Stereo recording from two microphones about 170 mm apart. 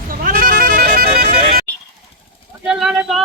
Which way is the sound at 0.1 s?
60° right (ahead or behind).